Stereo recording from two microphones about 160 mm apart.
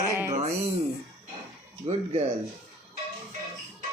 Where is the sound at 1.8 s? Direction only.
40° right (ahead or behind).